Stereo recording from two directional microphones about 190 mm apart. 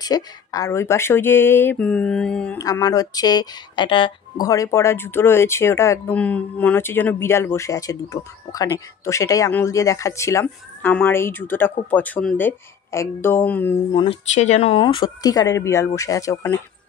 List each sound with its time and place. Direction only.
0.0 s speech: 20° left (ahead or behind)
2.6 s speech: 20° left (ahead or behind)
14.3 s speech: 35° left (ahead or behind); by 16.5 s 15° left (ahead or behind)